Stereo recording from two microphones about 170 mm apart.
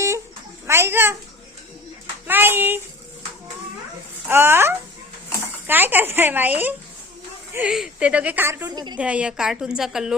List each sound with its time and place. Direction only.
0.7 s speech: 15° right (ahead or behind)
2.2 s speech: 10° right (ahead or behind)
4.3 s speech: 15° right (ahead or behind)
8.7 s speech: 25° right (ahead or behind)
9.0 s a woman's voice: 5° right (ahead or behind)